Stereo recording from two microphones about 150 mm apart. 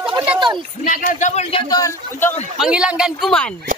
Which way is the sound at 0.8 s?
65° left (ahead or behind).